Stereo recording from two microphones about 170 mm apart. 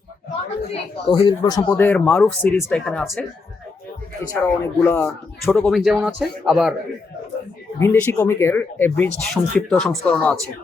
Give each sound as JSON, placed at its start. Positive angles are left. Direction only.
{"t": 0.7, "sound": "speech", "side_deg": 30}
{"t": 4.4, "sound": "speech", "side_deg": 15}
{"t": 7.8, "sound": "speech", "side_deg": 15}